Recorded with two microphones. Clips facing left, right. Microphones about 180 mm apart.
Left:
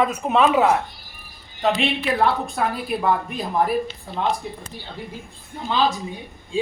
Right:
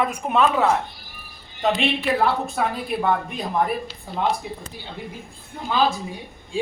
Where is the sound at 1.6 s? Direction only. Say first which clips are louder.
Even; centre (ahead or behind).